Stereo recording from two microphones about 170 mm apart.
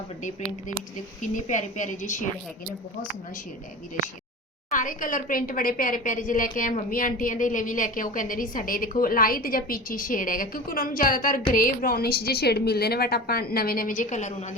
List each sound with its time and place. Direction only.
1.2 s a woman's voice: 45° left (ahead or behind)
4.7 s a woman's voice: 50° left (ahead or behind)